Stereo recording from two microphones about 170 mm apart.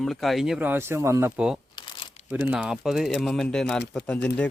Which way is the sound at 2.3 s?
10° right (ahead or behind).